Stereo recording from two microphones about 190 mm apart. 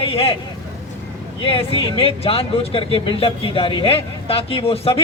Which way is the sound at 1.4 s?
30° left (ahead or behind).